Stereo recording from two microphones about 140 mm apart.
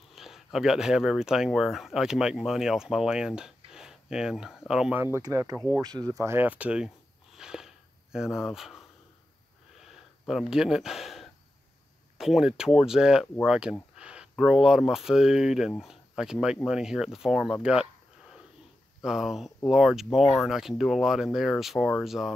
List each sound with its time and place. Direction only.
0.1 s speech: centre (ahead or behind)
5.0 s speech: 20° right (ahead or behind)
7.3 s sniff: 5° right (ahead or behind)
9.8 s gasp: centre (ahead or behind)
12.2 s speech: centre (ahead or behind)
18.9 s speech: centre (ahead or behind)